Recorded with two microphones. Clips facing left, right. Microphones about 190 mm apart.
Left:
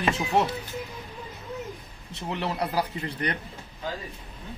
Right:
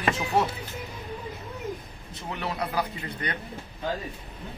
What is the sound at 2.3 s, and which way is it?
Speech, 30° left (ahead or behind).